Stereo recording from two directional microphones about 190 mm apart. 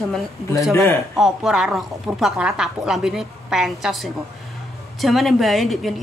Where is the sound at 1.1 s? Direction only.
Centre (ahead or behind).